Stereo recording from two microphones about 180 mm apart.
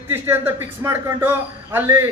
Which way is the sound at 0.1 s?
10° right (ahead or behind).